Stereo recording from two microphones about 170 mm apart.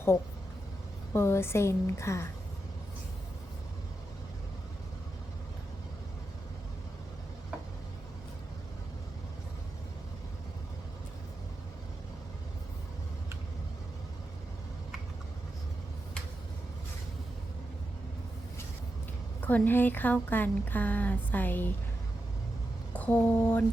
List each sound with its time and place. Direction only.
1.1 s speech: 15° left (ahead or behind)
19.4 s speech: 10° left (ahead or behind)
22.9 s speech: 10° left (ahead or behind)